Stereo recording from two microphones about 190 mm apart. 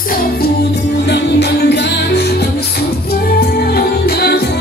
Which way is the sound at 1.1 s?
65° left (ahead or behind).